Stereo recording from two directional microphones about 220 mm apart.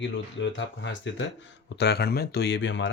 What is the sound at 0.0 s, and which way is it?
Speech, 55° left (ahead or behind).